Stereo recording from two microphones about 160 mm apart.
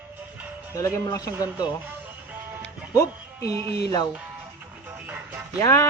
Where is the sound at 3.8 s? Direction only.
25° left (ahead or behind).